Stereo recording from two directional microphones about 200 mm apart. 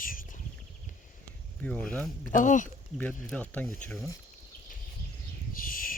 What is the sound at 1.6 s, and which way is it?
Speech, 5° left (ahead or behind).